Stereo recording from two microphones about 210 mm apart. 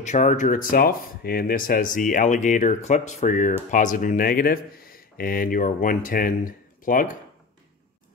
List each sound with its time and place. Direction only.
0.0 s speech: 35° left (ahead or behind)